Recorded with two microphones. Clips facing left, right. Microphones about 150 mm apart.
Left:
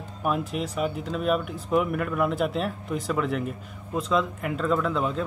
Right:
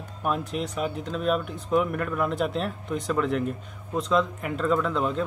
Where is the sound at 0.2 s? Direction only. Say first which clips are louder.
Left 1 dB; 5° left (ahead or behind).